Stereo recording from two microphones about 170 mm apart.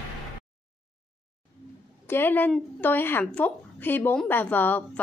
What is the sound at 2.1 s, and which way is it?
A woman's voice, 10° left (ahead or behind).